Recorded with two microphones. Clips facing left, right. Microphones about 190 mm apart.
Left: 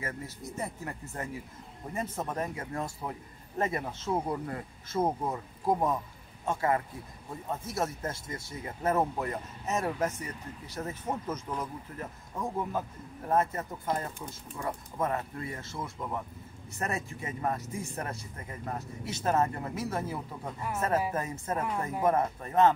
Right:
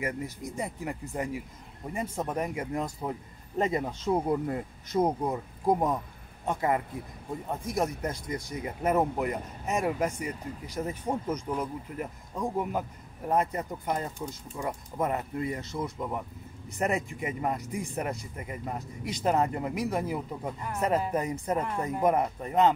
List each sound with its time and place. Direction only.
0.0 s speech: 15° right (ahead or behind)